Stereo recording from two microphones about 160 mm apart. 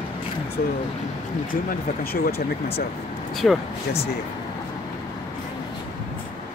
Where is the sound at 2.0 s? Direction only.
70° left (ahead or behind).